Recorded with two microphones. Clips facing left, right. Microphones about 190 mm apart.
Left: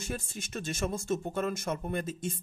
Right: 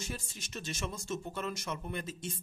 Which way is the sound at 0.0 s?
50° left (ahead or behind).